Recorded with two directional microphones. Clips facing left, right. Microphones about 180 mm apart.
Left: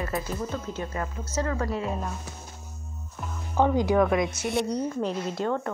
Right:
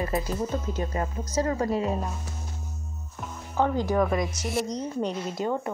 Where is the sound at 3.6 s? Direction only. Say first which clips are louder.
Left 2 dB; 15° left (ahead or behind).